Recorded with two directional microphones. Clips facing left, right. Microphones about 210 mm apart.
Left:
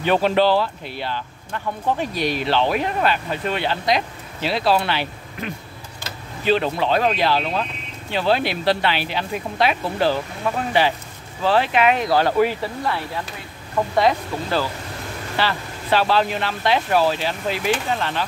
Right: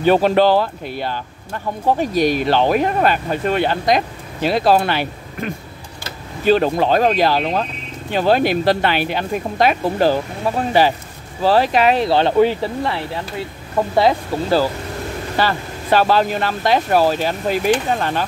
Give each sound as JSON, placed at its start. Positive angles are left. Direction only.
{"t": 0.0, "sound": "speech", "side_deg": -40}
{"t": 15.3, "sound": "speech", "side_deg": -45}